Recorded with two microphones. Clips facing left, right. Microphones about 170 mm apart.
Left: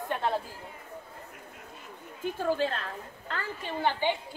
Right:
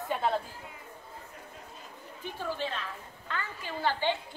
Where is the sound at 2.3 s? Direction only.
50° left (ahead or behind).